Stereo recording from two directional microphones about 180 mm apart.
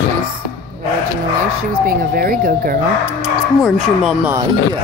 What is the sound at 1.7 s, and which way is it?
Speech, 55° right (ahead or behind).